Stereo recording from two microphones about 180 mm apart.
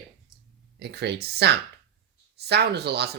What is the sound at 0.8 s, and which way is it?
Speech, 65° right (ahead or behind).